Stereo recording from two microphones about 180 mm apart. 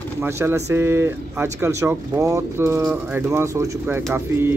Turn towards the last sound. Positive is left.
turn(degrees=-10)  # may be behind; listen again after turning